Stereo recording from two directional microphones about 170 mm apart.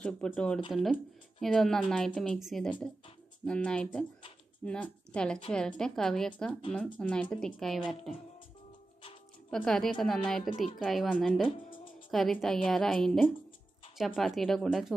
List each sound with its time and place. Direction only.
0.0 s a woman's voice: 5° left (ahead or behind)
9.5 s a woman's voice: centre (ahead or behind)